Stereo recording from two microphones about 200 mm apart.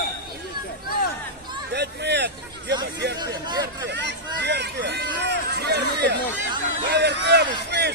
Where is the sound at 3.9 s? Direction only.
60° right (ahead or behind).